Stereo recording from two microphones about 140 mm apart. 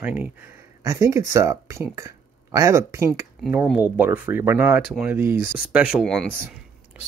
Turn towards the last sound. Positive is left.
turn(degrees=5)  # may be behind; listen again after turning